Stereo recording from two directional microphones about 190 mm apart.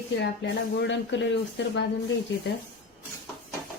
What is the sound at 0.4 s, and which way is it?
Speech, 70° left (ahead or behind).